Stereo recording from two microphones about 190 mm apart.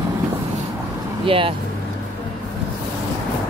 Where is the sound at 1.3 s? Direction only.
30° right (ahead or behind).